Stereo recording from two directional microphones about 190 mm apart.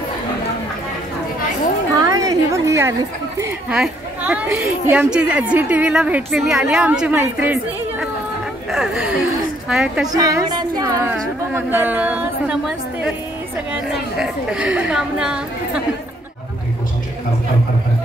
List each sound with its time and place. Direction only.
2.0 s a sound: 20° right (ahead or behind)
3.7 s a woman's voice: 5° right (ahead or behind)
10.1 s a woman's voice: 20° right (ahead or behind); by 13.1 s 5° right (ahead or behind)
14.2 s a woman's voice: 5° right (ahead or behind)